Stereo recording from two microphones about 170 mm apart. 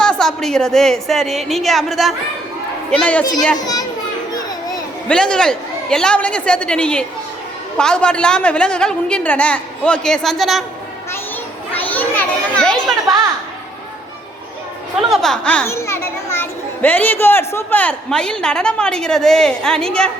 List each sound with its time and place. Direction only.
0.0 s a child's voice: 5° left (ahead or behind)
3.6 s children playing: 20° left (ahead or behind)
5.0 s a child's voice: 5° left (ahead or behind)
11.7 s a child's voice: 10° left (ahead or behind)
15.1 s a child's voice: 5° left (ahead or behind)